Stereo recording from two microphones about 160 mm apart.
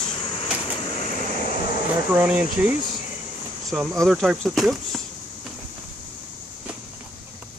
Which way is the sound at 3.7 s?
Centre (ahead or behind).